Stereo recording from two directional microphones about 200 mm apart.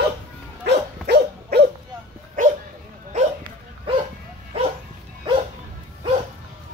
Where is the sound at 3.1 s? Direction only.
35° right (ahead or behind).